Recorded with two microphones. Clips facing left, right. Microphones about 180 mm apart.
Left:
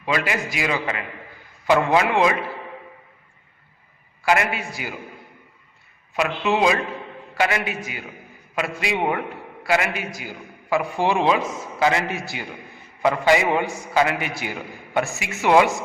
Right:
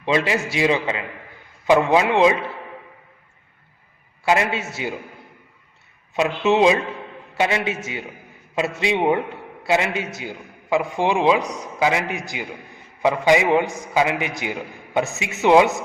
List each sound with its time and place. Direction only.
0.0 s a man's voice: 25° right (ahead or behind)
4.2 s a man's voice: 25° right (ahead or behind)
6.1 s a man's voice: 25° right (ahead or behind)